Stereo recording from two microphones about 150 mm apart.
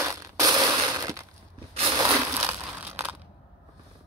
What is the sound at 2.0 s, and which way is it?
Crushing, 10° right (ahead or behind).